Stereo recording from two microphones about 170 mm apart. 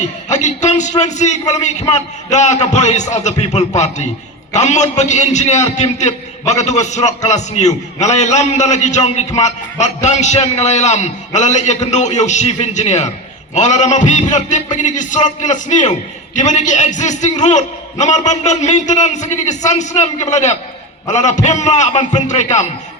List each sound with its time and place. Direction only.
0.3 s a man's voice: 45° left (ahead or behind)